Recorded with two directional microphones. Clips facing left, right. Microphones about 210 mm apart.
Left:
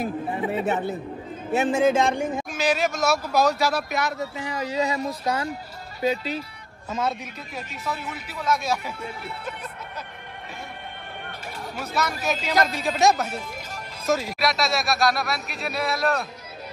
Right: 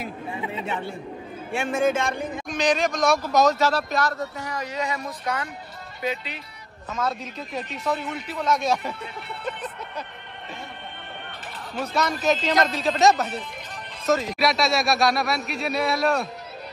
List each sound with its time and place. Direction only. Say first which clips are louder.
0.6 s speech: left 6 dB; 45° left (ahead or behind)
1.7 s speech: left 2 dB; 30° left (ahead or behind)
2.5 s speech: right 4 dB; 5° left (ahead or behind)
4.5 s speech: left 5 dB; 30° left (ahead or behind)
6.9 s speech: left 1 dB; 25° left (ahead or behind)
7.5 s speech: right 5 dB; 5° left (ahead or behind)
9.4 s music: right 3 dB; 5° left (ahead or behind)
11.7 s speech: right 3 dB; 5° left (ahead or behind)